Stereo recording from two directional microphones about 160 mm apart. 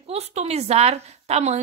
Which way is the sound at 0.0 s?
40° right (ahead or behind).